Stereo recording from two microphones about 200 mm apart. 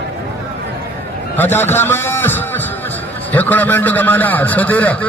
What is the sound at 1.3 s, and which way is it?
A man's voice, 10° left (ahead or behind).